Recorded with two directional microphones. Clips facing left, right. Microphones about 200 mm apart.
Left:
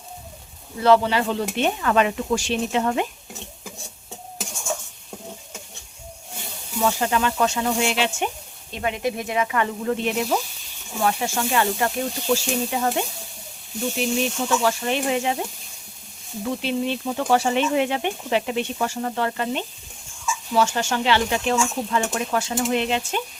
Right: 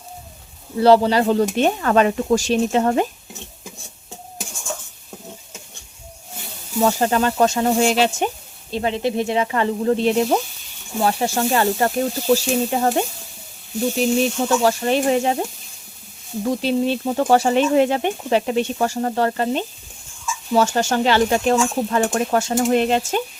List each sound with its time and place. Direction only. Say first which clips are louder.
0.8 s speech: right 4 dB; 35° right (ahead or behind)
6.8 s speech: right 4 dB; 40° right (ahead or behind)
16.5 s speech: right 5 dB; 40° right (ahead or behind)